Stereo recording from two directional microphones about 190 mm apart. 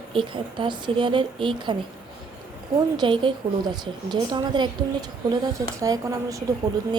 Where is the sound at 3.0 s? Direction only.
25° right (ahead or behind).